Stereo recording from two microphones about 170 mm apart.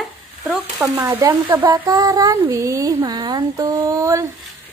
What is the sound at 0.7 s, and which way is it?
Speech, 15° right (ahead or behind).